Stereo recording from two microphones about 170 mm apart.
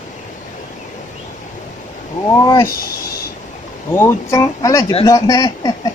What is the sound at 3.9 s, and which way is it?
Speech, 15° left (ahead or behind).